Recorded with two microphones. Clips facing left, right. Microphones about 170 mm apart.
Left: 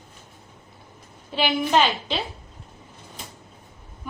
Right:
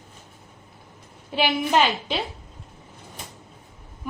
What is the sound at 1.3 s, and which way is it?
Speech, 10° right (ahead or behind).